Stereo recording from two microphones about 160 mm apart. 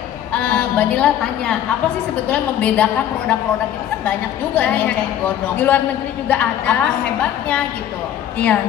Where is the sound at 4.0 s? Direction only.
10° left (ahead or behind).